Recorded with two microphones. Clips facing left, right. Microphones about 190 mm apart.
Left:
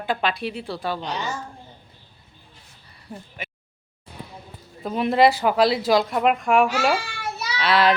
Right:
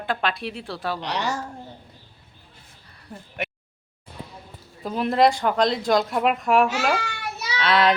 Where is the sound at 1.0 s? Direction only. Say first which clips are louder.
Right 2 dB; 75° right (ahead or behind).